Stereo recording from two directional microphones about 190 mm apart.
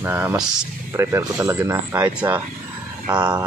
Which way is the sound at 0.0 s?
10° right (ahead or behind).